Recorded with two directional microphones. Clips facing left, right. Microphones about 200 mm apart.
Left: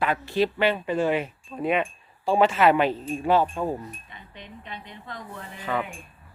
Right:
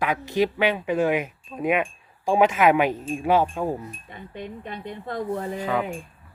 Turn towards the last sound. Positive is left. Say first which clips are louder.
# right 3 dB
turn(degrees=-10)  # may be behind; listen again after turning